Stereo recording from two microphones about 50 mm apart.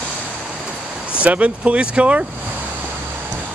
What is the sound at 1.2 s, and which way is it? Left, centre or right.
Speech, right.